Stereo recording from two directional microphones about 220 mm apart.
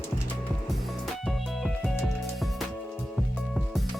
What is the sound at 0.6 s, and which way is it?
Music, centre (ahead or behind).